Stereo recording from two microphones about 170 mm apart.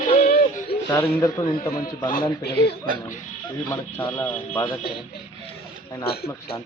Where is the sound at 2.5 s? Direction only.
75° left (ahead or behind).